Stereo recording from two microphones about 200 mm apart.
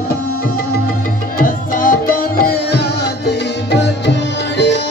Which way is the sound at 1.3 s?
45° left (ahead or behind).